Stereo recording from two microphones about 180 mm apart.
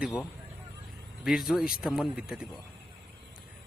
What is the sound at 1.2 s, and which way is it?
Speech, centre (ahead or behind).